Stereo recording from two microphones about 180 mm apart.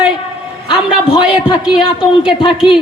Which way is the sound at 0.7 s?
25° left (ahead or behind).